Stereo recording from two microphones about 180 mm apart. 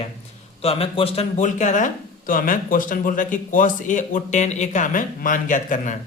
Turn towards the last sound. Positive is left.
turn(degrees=45)  # may be behind; listen again after turning